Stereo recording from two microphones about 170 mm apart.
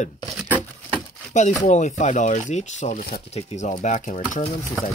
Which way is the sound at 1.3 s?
45° left (ahead or behind).